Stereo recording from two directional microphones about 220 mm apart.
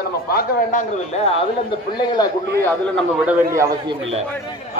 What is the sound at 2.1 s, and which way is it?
Speech, 15° left (ahead or behind).